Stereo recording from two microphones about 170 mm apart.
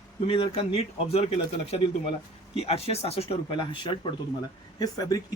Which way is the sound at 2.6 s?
35° left (ahead or behind).